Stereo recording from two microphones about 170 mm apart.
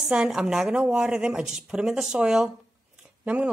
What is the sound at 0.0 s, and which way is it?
A woman's voice, 5° right (ahead or behind).